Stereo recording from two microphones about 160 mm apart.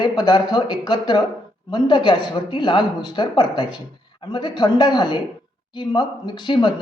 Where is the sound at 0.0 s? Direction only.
25° left (ahead or behind).